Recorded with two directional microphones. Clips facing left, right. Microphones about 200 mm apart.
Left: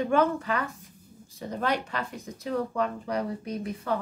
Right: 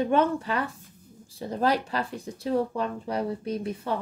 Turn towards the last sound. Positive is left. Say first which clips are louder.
# right 1 dB
turn(degrees=-30)  # may be behind; listen again after turning